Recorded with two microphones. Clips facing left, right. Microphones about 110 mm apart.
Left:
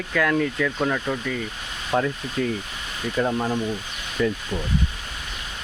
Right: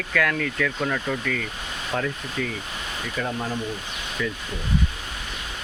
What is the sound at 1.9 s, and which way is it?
Speech, 25° left (ahead or behind).